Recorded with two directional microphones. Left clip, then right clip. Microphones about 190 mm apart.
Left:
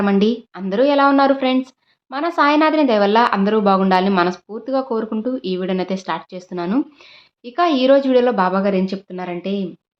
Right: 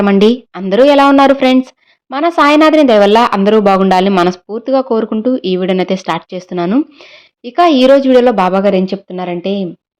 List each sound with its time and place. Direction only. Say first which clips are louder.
0.0 s speech: right 8 dB; 35° right (ahead or behind)